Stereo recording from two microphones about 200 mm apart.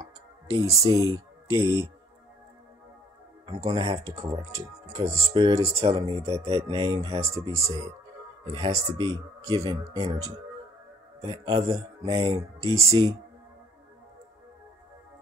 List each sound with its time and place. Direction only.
0.5 s speech: 15° right (ahead or behind)
3.4 s speech: 30° right (ahead or behind)
3.9 s speech: 15° right (ahead or behind)
5.8 s speech: 30° right (ahead or behind)
7.3 s speech: 15° right (ahead or behind)
8.7 s speech: 20° right (ahead or behind)